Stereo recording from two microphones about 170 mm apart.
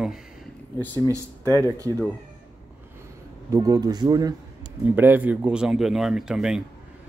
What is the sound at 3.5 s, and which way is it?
Speech, 20° right (ahead or behind).